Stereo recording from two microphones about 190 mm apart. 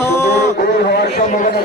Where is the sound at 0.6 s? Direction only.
60° left (ahead or behind).